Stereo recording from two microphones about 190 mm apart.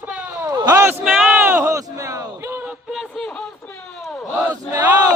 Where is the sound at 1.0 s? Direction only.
5° right (ahead or behind).